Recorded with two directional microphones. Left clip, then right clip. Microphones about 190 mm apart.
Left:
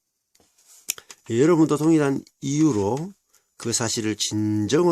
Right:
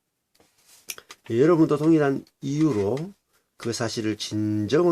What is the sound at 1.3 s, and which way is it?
Speech, 35° left (ahead or behind).